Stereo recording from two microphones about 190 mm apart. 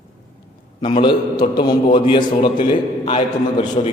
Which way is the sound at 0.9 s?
25° left (ahead or behind).